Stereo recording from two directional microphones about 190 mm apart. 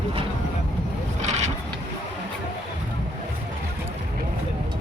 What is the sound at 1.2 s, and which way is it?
Vehicle, 35° right (ahead or behind).